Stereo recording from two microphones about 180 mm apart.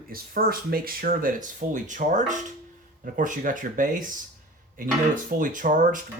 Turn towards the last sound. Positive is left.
turn(degrees=-45)  # may be behind; listen again after turning